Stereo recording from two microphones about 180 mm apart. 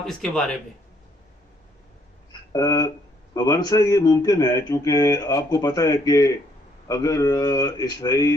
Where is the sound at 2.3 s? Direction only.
20° left (ahead or behind).